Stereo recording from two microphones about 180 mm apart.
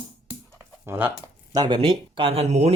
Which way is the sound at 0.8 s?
15° right (ahead or behind).